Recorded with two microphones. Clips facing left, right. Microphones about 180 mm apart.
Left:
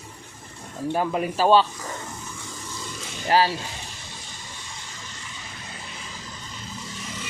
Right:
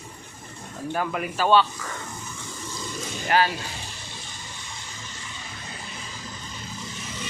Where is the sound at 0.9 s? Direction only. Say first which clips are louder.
Left 3 dB; 30° left (ahead or behind).